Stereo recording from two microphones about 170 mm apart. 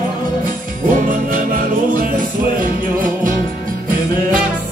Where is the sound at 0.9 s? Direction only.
50° right (ahead or behind).